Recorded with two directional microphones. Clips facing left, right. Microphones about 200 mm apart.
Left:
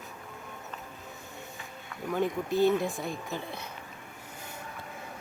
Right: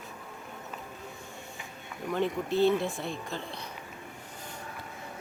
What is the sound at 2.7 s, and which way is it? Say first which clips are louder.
Speech: left 1 dB; centre (ahead or behind).